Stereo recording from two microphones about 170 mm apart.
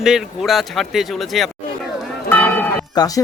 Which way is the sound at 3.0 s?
25° left (ahead or behind).